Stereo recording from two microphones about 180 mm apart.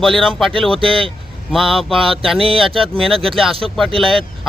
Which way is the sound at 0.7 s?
30° right (ahead or behind).